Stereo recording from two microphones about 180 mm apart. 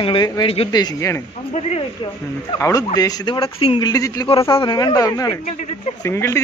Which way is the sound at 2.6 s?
20° left (ahead or behind).